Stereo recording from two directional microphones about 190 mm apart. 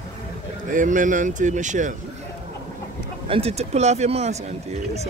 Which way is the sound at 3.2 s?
30° right (ahead or behind).